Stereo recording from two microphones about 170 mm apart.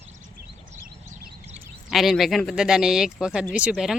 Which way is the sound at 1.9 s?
Centre (ahead or behind).